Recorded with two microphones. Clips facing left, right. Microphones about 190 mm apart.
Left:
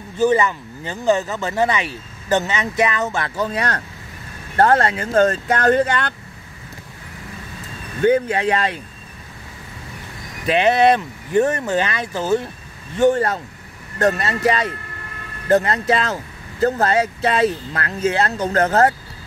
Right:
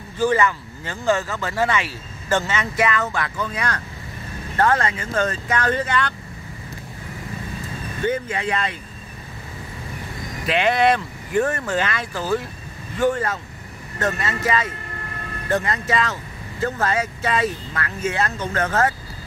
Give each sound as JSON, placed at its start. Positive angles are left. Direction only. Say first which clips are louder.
{"t": 0.2, "sound": "speech", "louder": "left 3 dB", "side_deg": 20}
{"t": 8.0, "sound": "speech", "louder": "left 8 dB", "side_deg": 60}
{"t": 8.4, "sound": "speech", "louder": "left 5 dB", "side_deg": 40}
{"t": 10.5, "sound": "speech", "louder": "left 4 dB", "side_deg": 20}